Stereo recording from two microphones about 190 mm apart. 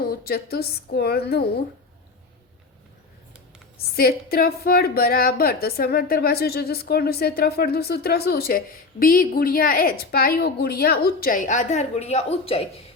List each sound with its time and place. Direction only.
0.0 s a woman's voice: 55° left (ahead or behind)
3.9 s a woman's voice: 50° left (ahead or behind); by 12.6 s 30° left (ahead or behind)